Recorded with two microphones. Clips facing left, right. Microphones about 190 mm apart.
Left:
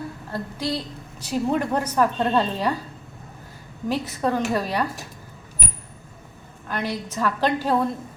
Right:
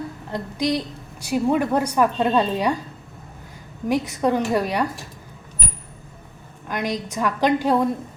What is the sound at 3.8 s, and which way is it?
A woman's voice, 15° right (ahead or behind).